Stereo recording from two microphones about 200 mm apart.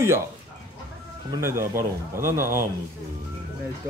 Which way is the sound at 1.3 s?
15° right (ahead or behind).